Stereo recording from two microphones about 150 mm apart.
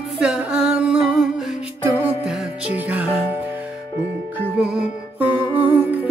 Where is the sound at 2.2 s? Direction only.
5° right (ahead or behind).